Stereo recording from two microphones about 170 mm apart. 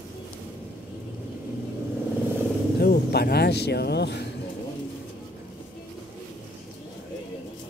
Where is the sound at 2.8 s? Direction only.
65° left (ahead or behind).